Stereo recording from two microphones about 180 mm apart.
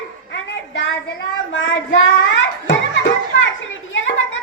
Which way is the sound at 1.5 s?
90° left.